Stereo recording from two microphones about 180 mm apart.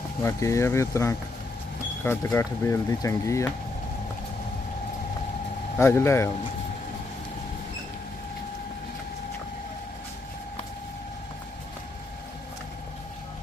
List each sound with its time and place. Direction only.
0.2 s speech: 15° left (ahead or behind)
5.7 s speech: 15° left (ahead or behind)